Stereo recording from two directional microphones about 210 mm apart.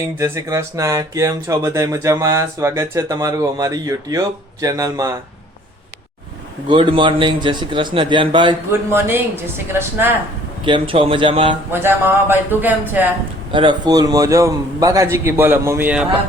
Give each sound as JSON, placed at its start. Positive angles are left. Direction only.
{"t": 0.2, "sound": "speech", "side_deg": -15}
{"t": 6.7, "sound": "speech", "side_deg": -20}
{"t": 8.9, "sound": "speech", "side_deg": -10}
{"t": 10.7, "sound": "speech", "side_deg": -25}
{"t": 11.7, "sound": "speech", "side_deg": -10}
{"t": 13.5, "sound": "speech", "side_deg": -25}